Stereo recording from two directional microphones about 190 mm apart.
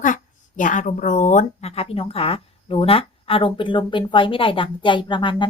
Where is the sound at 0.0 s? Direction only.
45° left (ahead or behind).